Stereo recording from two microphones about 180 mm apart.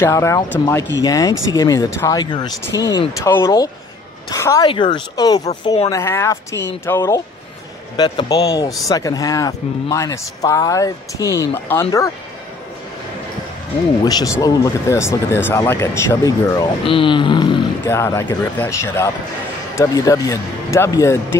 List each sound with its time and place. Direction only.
0.0 s a man's voice: 15° left (ahead or behind)
14.0 s a man's voice: 20° left (ahead or behind)
17.8 s speech: 15° left (ahead or behind)